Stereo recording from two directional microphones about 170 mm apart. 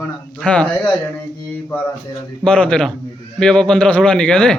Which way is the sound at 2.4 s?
5° left (ahead or behind).